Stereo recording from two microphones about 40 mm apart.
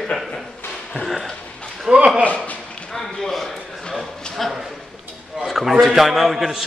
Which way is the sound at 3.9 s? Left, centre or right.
Centre.